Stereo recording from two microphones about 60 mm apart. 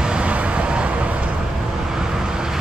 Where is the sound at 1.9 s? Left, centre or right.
Centre.